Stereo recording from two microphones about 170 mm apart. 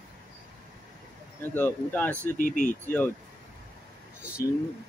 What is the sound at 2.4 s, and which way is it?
Speech, 50° left (ahead or behind).